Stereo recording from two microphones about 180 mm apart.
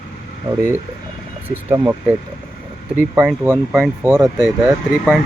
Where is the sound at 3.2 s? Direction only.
10° right (ahead or behind).